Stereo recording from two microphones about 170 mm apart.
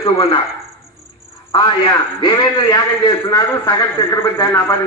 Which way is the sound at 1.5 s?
30° left (ahead or behind).